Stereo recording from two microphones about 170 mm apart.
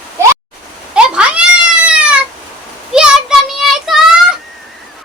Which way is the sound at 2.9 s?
5° right (ahead or behind).